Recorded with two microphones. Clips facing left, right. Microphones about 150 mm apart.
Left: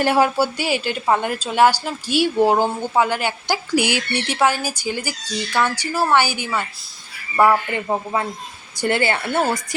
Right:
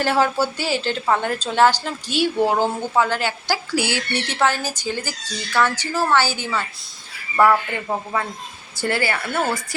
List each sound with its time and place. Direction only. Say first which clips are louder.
0.0 s speech: left 2 dB; 15° left (ahead or behind)